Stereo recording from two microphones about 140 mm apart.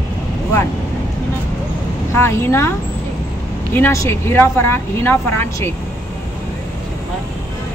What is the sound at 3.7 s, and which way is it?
Speech, 20° left (ahead or behind).